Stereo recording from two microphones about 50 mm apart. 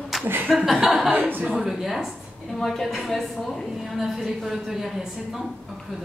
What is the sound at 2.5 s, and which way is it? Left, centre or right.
A woman's voice, centre.